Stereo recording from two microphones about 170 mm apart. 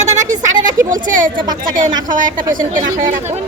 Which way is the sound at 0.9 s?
50° right (ahead or behind).